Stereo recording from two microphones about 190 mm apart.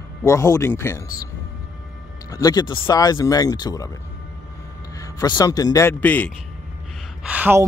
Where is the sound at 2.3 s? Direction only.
20° left (ahead or behind).